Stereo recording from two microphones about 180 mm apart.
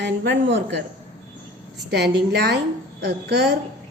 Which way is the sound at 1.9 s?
65° right (ahead or behind).